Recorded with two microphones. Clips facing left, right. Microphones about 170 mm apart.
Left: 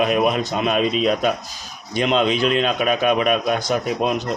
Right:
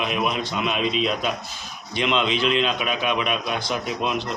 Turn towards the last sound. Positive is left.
turn(degrees=45)  # may be behind; listen again after turning